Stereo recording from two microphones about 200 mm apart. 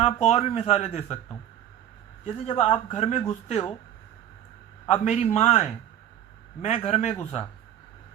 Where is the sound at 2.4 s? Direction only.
30° left (ahead or behind).